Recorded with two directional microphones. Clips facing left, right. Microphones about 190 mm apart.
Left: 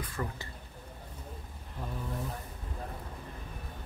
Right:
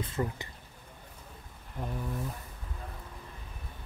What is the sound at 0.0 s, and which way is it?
Speech, 20° right (ahead or behind).